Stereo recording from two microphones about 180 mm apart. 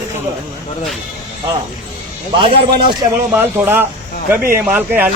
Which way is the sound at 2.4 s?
25° right (ahead or behind).